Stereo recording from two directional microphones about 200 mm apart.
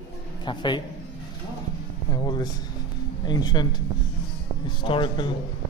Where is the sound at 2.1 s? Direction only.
20° left (ahead or behind).